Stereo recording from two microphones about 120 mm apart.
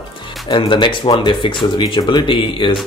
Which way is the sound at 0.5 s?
45° left (ahead or behind).